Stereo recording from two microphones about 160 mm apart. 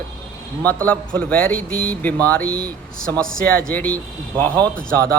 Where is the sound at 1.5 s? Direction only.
65° right (ahead or behind).